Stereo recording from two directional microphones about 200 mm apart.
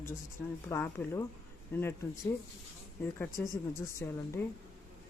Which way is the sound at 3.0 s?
10° left (ahead or behind).